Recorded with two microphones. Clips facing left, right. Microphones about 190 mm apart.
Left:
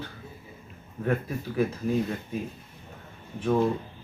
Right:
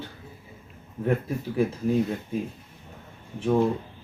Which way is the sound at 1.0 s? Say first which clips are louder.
Right 2 dB; 20° right (ahead or behind).